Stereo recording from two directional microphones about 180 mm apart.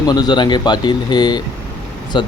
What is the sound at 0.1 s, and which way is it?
Speech, 25° left (ahead or behind).